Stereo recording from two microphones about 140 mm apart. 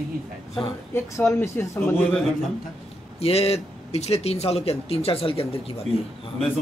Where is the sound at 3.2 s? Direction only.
45° left (ahead or behind).